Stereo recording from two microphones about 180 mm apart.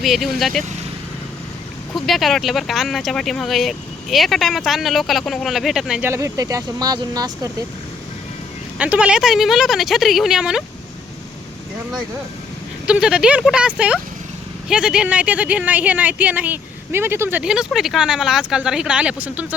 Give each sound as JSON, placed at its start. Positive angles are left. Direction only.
{"t": 0.0, "sound": "speech", "side_deg": 0}
{"t": 2.0, "sound": "speech", "side_deg": 0}
{"t": 6.1, "sound": "speech", "side_deg": -15}
{"t": 8.8, "sound": "speech", "side_deg": -5}
{"t": 12.9, "sound": "speech", "side_deg": -5}